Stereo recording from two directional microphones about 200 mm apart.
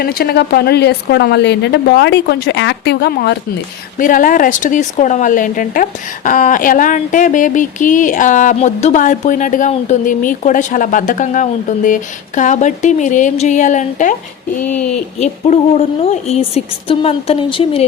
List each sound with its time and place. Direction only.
0.0 s speech: 50° left (ahead or behind)
3.9 s speech: 45° left (ahead or behind)